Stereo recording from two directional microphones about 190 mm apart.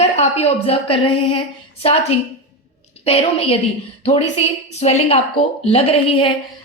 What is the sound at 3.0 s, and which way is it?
Speech, 30° left (ahead or behind).